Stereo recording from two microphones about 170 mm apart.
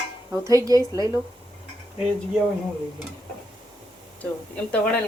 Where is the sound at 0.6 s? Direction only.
20° right (ahead or behind).